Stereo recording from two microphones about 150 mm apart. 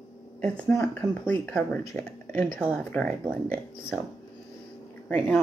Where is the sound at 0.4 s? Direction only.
10° left (ahead or behind).